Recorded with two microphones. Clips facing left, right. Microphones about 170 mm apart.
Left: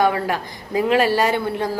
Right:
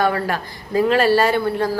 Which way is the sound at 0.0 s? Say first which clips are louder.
Left 1 dB; 15° left (ahead or behind).